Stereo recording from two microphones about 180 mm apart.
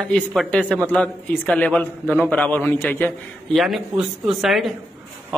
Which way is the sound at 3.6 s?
Centre (ahead or behind).